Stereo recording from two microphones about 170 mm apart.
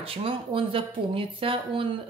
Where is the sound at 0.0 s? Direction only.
35° right (ahead or behind).